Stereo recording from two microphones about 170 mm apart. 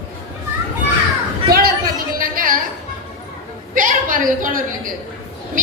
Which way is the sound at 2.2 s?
55° right (ahead or behind).